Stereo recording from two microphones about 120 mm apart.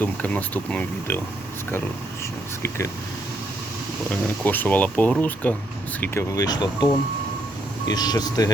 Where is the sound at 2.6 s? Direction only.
25° left (ahead or behind).